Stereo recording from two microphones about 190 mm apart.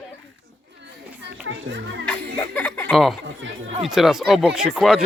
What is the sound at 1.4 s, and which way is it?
Music, 80° right.